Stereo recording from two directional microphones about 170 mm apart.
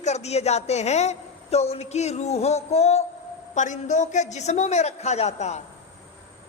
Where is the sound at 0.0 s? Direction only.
40° left (ahead or behind).